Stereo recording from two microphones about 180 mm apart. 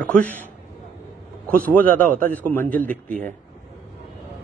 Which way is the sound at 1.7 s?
10° left (ahead or behind).